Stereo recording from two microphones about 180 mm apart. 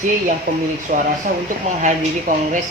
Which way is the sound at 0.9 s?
45° right (ahead or behind).